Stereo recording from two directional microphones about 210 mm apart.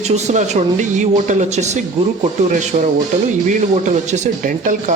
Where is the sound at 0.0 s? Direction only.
30° right (ahead or behind).